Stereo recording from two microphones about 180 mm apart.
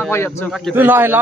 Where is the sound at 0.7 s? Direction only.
10° right (ahead or behind).